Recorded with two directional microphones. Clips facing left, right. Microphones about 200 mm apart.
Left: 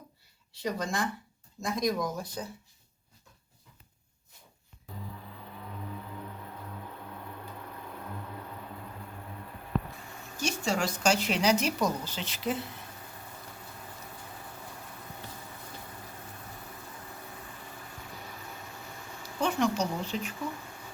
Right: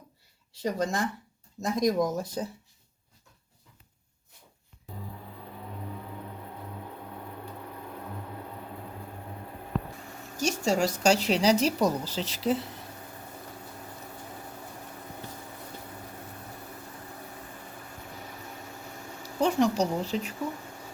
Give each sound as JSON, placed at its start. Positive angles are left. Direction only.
{"t": 0.5, "sound": "speech", "side_deg": -45}
{"t": 10.3, "sound": "speech", "side_deg": -45}
{"t": 19.2, "sound": "a sound", "side_deg": -35}